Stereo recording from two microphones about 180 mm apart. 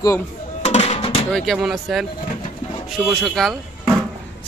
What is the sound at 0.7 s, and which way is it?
Music, 35° left (ahead or behind).